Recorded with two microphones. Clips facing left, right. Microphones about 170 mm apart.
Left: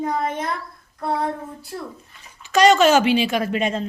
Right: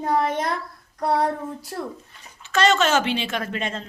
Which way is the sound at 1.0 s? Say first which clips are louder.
Right 2 dB; 40° right (ahead or behind).